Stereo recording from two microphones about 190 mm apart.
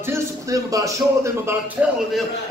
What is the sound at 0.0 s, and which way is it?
A man's voice, 15° right (ahead or behind).